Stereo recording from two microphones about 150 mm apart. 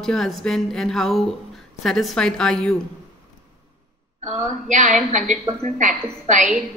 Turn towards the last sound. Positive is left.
turn(degrees=-55)  # may be behind; listen again after turning